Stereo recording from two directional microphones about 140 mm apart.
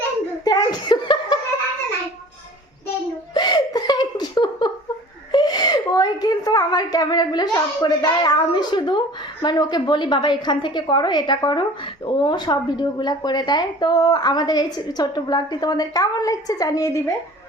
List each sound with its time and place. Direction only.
0.4 s chuckle: 30° left (ahead or behind)
3.3 s laughter: 30° left (ahead or behind)
5.3 s a sound: 30° left (ahead or behind)
12.0 s speech: 35° left (ahead or behind)